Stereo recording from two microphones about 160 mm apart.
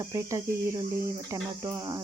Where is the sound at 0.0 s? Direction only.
20° right (ahead or behind).